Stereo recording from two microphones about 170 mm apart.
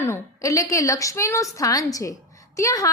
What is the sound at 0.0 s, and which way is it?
A woman's voice, 15° left (ahead or behind).